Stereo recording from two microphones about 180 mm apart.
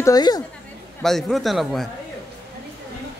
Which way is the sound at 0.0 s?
20° left (ahead or behind).